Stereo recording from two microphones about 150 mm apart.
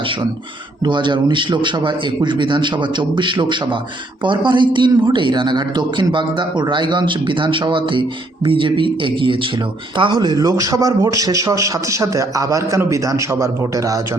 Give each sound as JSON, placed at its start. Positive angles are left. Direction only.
{"t": 0.9, "sound": "a man's voice", "side_deg": -30}